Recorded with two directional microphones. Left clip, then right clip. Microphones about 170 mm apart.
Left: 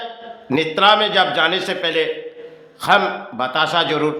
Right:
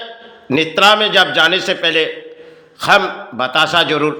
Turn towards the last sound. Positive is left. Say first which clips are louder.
# right 4 dB
turn(degrees=-15)  # may be behind; listen again after turning